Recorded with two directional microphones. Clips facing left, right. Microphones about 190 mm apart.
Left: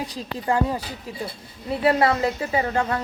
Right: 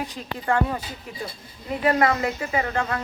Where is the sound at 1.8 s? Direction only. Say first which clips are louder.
Left 1 dB; 30° left (ahead or behind).